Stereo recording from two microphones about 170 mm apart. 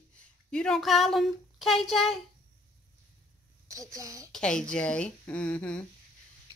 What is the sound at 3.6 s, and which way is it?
Speech, 20° right (ahead or behind).